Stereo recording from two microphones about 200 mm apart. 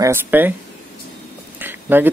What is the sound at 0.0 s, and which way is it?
Speech, 10° right (ahead or behind).